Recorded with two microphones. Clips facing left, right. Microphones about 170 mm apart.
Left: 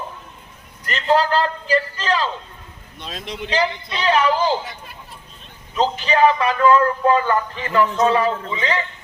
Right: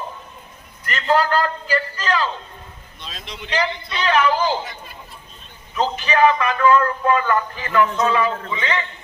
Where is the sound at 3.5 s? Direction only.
25° left (ahead or behind).